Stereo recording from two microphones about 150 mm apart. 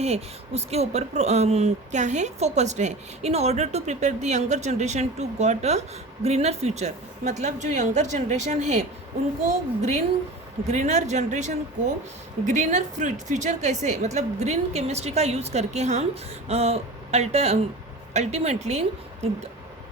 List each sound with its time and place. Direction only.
0.0 s speech: 45° right (ahead or behind)